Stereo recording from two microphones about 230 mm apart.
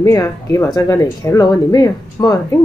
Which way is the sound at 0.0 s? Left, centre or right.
Centre.